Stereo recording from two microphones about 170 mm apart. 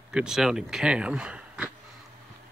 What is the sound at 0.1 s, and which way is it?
Speech, 5° right (ahead or behind).